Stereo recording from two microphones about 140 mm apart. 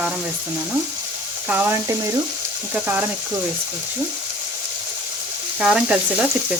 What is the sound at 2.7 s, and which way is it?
Speech, 15° right (ahead or behind).